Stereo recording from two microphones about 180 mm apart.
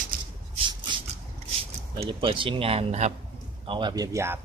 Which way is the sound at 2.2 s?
30° right (ahead or behind).